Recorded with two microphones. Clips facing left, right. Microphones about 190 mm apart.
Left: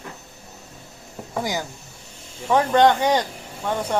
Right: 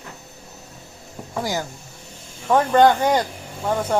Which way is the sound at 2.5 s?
5° right (ahead or behind).